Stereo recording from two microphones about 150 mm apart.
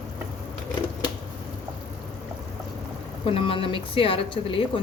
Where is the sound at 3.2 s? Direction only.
35° left (ahead or behind).